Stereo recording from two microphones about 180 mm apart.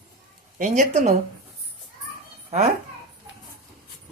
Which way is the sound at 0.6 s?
40° right (ahead or behind).